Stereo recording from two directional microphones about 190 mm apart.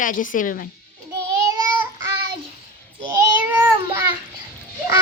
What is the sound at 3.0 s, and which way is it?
Child singing, 10° right (ahead or behind).